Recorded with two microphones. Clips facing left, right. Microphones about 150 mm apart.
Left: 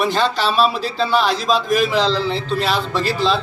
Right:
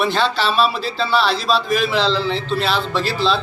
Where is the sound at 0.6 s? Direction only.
45° left (ahead or behind).